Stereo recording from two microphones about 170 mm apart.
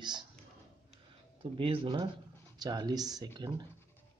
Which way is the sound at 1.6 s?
30° right (ahead or behind).